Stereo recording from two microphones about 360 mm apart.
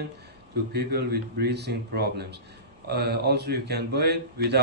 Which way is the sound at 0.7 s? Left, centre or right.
Right.